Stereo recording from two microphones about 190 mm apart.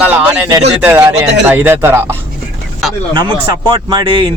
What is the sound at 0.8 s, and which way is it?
Speech, 10° right (ahead or behind).